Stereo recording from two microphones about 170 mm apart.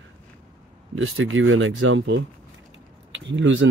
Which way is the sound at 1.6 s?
90° right.